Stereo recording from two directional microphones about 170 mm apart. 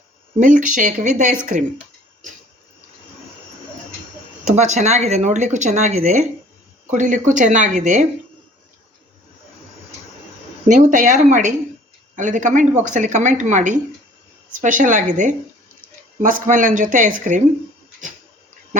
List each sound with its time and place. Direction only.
0.3 s speech: 50° right (ahead or behind)
4.4 s speech: 45° right (ahead or behind)
10.7 s speech: 45° right (ahead or behind)